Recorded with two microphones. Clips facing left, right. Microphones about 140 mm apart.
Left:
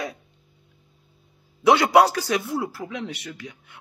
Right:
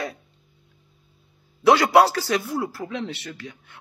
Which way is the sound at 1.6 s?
20° left (ahead or behind).